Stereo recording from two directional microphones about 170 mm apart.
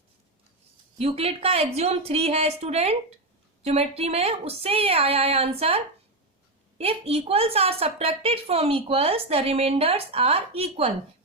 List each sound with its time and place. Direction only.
0.9 s a woman's voice: 35° right (ahead or behind)